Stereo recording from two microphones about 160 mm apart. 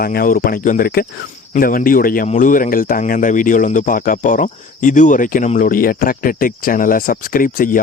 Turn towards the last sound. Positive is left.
turn(degrees=60)  # may be behind; listen again after turning